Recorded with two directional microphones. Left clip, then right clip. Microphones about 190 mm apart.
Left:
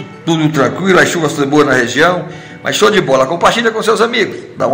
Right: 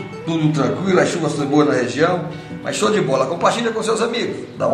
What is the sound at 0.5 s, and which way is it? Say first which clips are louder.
A man's voice: left 7 dB; 45° left (ahead or behind).